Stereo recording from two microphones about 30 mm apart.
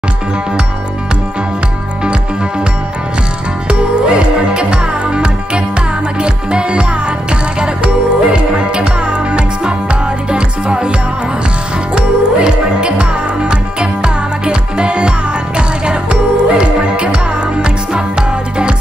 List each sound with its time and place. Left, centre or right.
3.6 s music: right
11.9 s music: right